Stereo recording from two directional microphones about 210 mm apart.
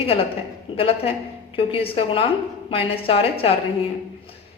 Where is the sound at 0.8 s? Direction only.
25° left (ahead or behind).